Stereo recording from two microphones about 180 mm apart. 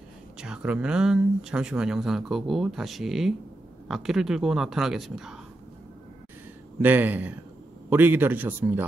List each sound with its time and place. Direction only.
0.4 s speech: 5° right (ahead or behind)
6.8 s a man's voice: 10° right (ahead or behind)